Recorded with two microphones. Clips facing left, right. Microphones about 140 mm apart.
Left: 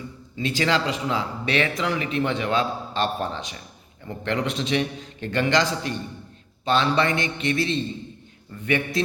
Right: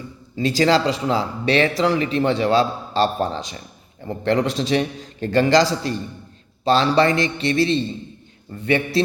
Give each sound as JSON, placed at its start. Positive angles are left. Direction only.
{"t": 0.3, "sound": "speech", "side_deg": -35}